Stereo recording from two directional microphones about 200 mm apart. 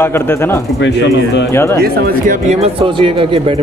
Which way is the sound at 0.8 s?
60° left (ahead or behind).